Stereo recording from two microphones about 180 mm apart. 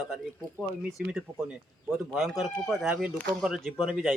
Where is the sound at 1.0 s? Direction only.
5° right (ahead or behind).